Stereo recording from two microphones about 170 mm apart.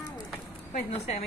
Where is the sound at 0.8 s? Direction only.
40° left (ahead or behind).